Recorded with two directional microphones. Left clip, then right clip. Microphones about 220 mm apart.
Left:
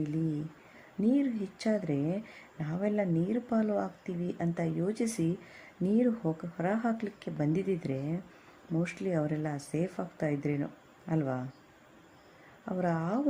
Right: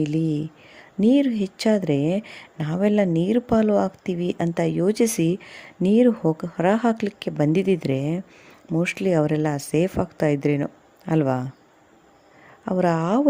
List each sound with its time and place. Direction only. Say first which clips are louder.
1.0 s speech: right 11 dB; 40° right (ahead or behind)
12.6 s speech: right 11 dB; 40° right (ahead or behind)